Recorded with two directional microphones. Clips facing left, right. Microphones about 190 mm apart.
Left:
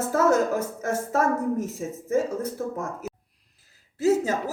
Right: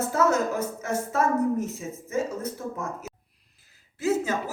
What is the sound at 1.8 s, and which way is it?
Speech, 45° left (ahead or behind).